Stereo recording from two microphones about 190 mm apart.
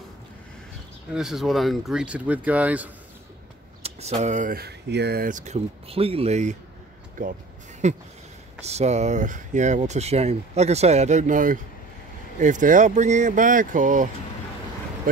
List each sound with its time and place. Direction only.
1.1 s speech: centre (ahead or behind)
3.8 s speech: 35° right (ahead or behind)
7.8 s speech: 40° right (ahead or behind)